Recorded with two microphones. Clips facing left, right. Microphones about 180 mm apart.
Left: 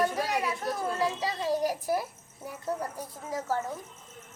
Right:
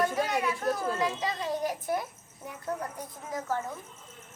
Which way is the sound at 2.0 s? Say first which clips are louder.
Left 2 dB; 10° left (ahead or behind).